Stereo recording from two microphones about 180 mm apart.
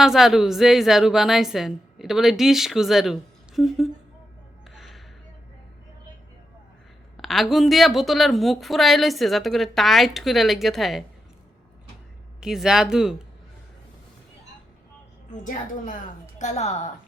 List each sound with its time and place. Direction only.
0.0 s a woman's voice: centre (ahead or behind)
4.7 s music: centre (ahead or behind)
7.2 s a woman's voice: centre (ahead or behind)
12.4 s a woman's voice: 5° right (ahead or behind)
16.4 s a woman's voice: 40° left (ahead or behind)